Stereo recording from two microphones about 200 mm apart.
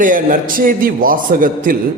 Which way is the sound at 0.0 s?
45° right (ahead or behind).